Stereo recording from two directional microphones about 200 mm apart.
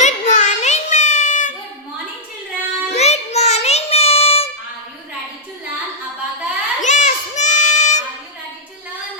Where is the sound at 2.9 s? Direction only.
30° left (ahead or behind).